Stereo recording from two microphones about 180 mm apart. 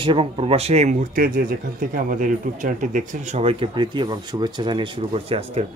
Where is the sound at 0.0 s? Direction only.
30° right (ahead or behind).